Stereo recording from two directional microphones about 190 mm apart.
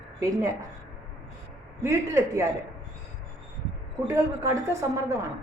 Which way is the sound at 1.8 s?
15° right (ahead or behind).